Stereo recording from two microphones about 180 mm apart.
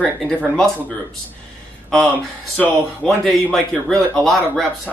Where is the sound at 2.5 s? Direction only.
5° left (ahead or behind).